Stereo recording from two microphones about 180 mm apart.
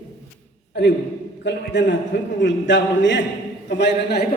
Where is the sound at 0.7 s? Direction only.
65° left (ahead or behind).